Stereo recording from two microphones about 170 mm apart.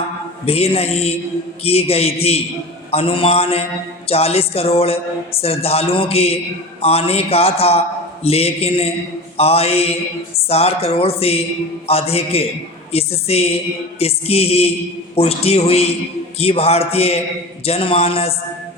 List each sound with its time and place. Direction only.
0.4 s speech: 35° left (ahead or behind)